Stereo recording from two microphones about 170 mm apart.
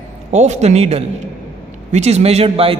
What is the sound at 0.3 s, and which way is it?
A man's voice, 40° right (ahead or behind).